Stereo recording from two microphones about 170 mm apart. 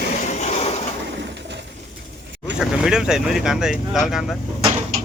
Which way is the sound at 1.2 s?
90° right.